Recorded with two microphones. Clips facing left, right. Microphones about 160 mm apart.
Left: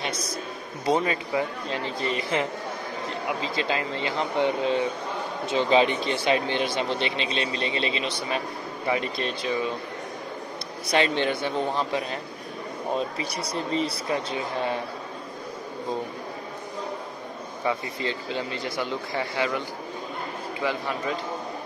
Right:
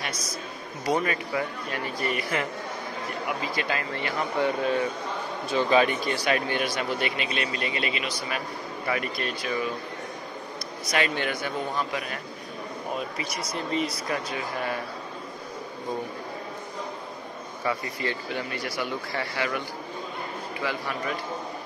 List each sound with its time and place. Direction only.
0.8 s speech: 25° left (ahead or behind)
10.9 s speech: 25° left (ahead or behind)
17.6 s speech: 20° left (ahead or behind)